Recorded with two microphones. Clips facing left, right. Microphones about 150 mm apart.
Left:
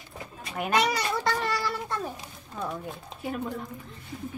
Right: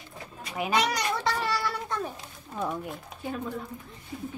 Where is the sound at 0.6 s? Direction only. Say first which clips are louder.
Left 1 dB; centre (ahead or behind).